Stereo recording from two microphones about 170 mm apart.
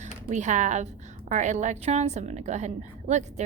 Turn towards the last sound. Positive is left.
turn(degrees=-40)  # may be behind; listen again after turning